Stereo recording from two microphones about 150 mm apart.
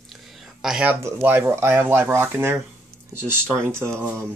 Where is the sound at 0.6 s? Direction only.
5° right (ahead or behind).